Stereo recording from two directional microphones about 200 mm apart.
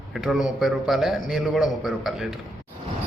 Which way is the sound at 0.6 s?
Centre (ahead or behind).